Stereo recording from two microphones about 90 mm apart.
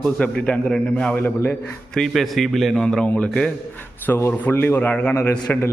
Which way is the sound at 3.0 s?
15° left (ahead or behind).